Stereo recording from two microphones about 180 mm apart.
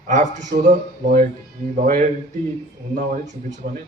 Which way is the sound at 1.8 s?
50° right (ahead or behind).